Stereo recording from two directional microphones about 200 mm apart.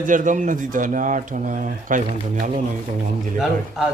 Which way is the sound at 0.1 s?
40° right (ahead or behind).